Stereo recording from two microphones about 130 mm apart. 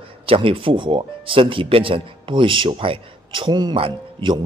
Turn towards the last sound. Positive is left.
turn(degrees=-40)  # may be behind; listen again after turning